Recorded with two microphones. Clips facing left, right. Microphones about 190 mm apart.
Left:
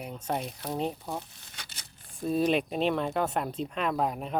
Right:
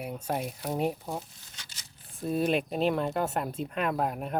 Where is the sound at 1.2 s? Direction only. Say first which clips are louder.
Left 3 dB; 60° left (ahead or behind).